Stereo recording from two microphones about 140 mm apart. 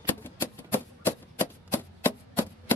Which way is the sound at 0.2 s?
15° left (ahead or behind).